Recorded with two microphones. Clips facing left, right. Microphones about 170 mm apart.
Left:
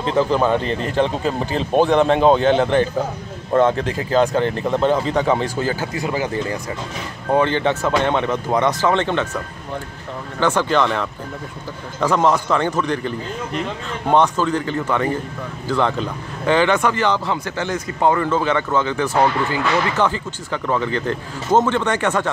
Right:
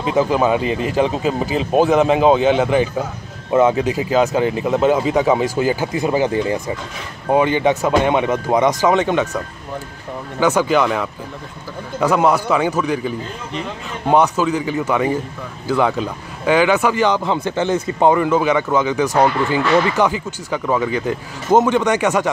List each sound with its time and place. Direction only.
0.0 s speech: 10° right (ahead or behind)
10.4 s speech: 10° right (ahead or behind)